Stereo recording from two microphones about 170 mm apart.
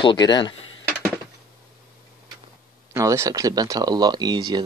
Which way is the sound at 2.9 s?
15° right (ahead or behind).